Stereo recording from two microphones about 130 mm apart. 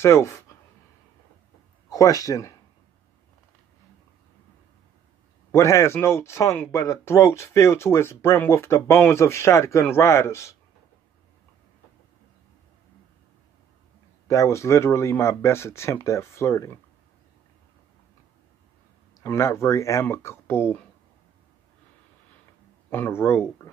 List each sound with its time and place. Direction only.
0.0 s speech: 20° left (ahead or behind)
1.9 s speech: 30° left (ahead or behind)
5.5 s speech: 20° left (ahead or behind)
14.2 s speech: 25° left (ahead or behind)
19.2 s speech: 20° left (ahead or behind)
22.8 s speech: 15° left (ahead or behind)